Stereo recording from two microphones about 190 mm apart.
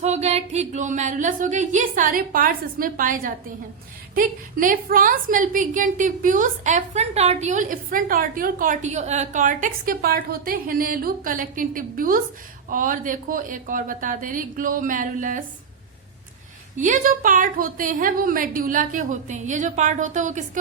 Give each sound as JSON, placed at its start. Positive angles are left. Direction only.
{"t": 0.0, "sound": "a woman's voice", "side_deg": -35}
{"t": 16.7, "sound": "a woman's voice", "side_deg": -45}